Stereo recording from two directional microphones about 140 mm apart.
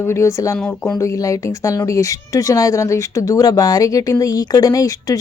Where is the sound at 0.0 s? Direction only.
20° left (ahead or behind).